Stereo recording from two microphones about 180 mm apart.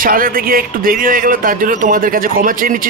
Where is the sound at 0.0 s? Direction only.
50° right (ahead or behind).